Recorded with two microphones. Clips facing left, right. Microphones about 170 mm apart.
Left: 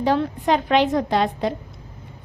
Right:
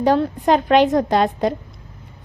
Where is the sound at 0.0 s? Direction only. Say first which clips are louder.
Right 4 dB; 45° right (ahead or behind).